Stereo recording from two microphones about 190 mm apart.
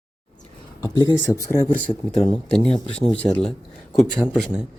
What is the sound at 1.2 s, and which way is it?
A man's voice, 15° left (ahead or behind).